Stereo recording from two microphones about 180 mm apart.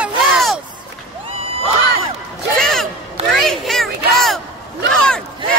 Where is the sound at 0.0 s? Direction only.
Centre (ahead or behind).